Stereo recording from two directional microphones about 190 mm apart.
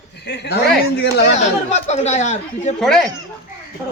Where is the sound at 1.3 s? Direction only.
35° left (ahead or behind).